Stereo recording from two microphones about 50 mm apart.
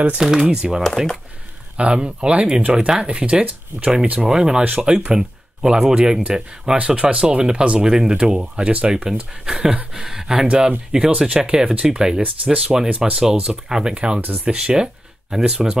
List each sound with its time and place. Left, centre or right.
0.2 s speech: centre